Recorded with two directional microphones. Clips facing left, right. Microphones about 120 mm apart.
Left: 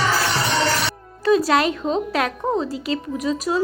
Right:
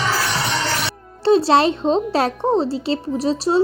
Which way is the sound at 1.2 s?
30° right (ahead or behind).